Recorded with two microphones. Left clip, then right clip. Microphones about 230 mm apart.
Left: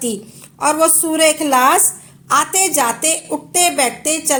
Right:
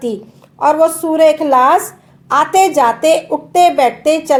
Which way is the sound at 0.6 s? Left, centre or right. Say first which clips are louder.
Right 4 dB; left.